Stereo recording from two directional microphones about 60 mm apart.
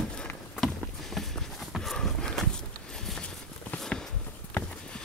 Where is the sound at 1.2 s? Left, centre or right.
Centre.